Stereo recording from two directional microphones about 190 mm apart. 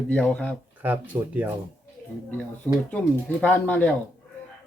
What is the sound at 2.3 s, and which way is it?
Speech, 5° left (ahead or behind).